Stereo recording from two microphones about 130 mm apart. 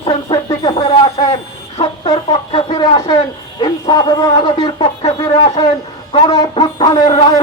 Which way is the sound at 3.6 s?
30° left (ahead or behind).